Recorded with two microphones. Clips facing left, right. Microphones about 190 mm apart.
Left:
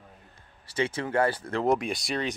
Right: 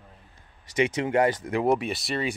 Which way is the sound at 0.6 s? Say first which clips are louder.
Right 4 dB; 15° right (ahead or behind).